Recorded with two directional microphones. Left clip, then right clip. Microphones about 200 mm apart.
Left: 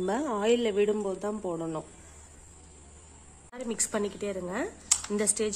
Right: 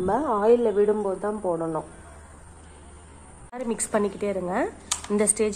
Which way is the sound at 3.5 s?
25° left (ahead or behind).